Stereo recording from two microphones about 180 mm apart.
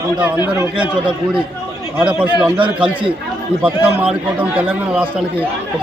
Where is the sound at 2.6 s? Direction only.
30° right (ahead or behind).